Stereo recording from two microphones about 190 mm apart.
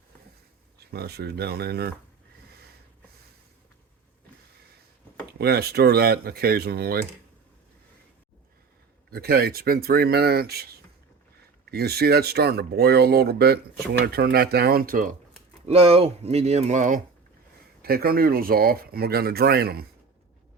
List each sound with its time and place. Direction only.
0.9 s speech: 55° right (ahead or behind)
5.4 s speech: 55° right (ahead or behind)
9.0 s speech: 55° right (ahead or behind)
15.6 s speech: 30° right (ahead or behind)
17.8 s speech: 55° right (ahead or behind)